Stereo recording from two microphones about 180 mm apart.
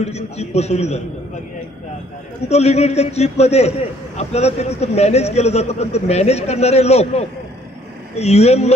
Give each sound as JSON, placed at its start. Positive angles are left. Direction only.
{"t": 0.0, "sound": "a man's voice", "side_deg": 35}
{"t": 2.5, "sound": "a man's voice", "side_deg": 35}